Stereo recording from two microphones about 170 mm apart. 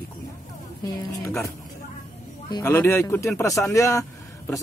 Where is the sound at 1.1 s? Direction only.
15° left (ahead or behind).